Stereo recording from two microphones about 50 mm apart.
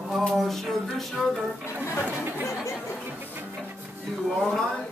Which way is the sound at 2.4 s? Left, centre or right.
Left.